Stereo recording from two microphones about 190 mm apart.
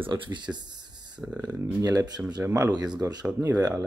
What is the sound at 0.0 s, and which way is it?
Speech, 25° right (ahead or behind).